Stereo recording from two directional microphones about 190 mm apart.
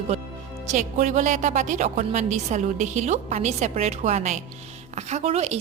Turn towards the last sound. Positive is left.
turn(degrees=-35)  # may be behind; listen again after turning